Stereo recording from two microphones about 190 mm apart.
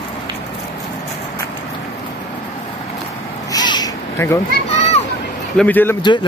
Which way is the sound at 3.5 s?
20° left (ahead or behind).